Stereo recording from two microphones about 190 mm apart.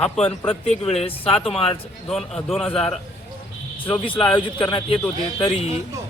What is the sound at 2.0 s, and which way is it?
Speech, centre (ahead or behind).